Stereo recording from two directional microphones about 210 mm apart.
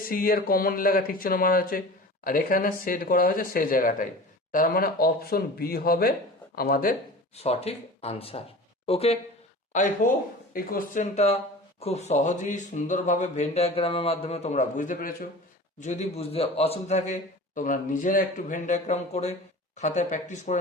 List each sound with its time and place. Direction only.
0.0 s a man's voice: 40° left (ahead or behind)
7.3 s a man's voice: 30° left (ahead or behind)